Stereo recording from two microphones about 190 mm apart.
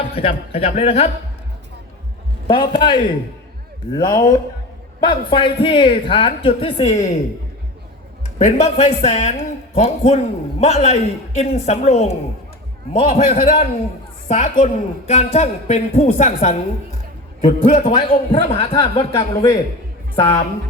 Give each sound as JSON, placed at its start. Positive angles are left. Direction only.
{"t": 0.1, "sound": "a woman's voice", "side_deg": 30}
{"t": 2.5, "sound": "a man's voice", "side_deg": 25}
{"t": 8.4, "sound": "a woman's voice", "side_deg": 35}
{"t": 19.1, "sound": "a man's voice", "side_deg": 15}